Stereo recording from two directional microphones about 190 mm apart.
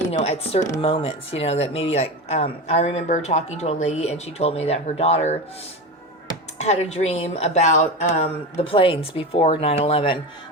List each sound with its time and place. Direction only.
0.1 s speech: 30° left (ahead or behind)
6.6 s speech: 35° left (ahead or behind)